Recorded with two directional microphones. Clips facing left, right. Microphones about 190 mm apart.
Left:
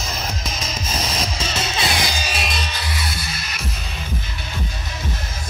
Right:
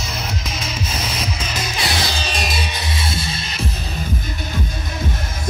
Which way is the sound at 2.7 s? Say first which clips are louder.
Right 3 dB; 25° right (ahead or behind).